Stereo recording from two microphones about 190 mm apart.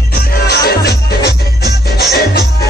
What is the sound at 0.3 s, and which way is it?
Music, 55° left (ahead or behind).